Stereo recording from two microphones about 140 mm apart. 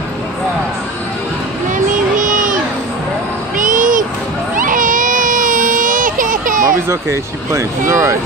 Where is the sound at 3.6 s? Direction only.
75° right (ahead or behind).